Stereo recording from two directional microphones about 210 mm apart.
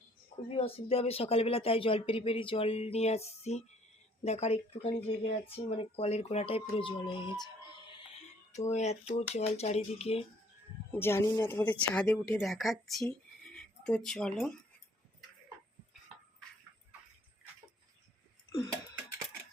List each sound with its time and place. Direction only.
0.4 s speech: 30° left (ahead or behind)
8.5 s speech: 35° left (ahead or behind)
10.9 s a woman's voice: 10° left (ahead or behind)